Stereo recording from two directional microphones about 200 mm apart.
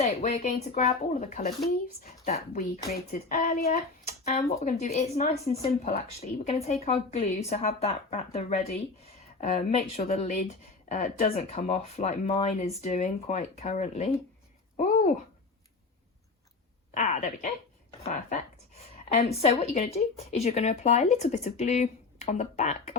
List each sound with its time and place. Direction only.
0.0 s a child's voice: 35° left (ahead or behind)
16.9 s speech: 35° left (ahead or behind)